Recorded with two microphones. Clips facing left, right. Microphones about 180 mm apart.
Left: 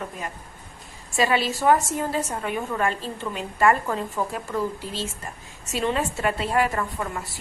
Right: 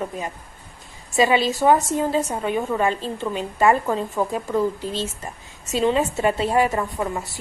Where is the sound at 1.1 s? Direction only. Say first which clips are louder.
Right 4 dB; 20° right (ahead or behind).